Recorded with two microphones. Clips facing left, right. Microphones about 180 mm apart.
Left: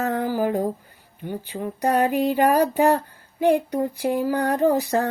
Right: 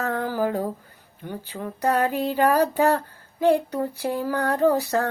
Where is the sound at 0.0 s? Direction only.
15° left (ahead or behind).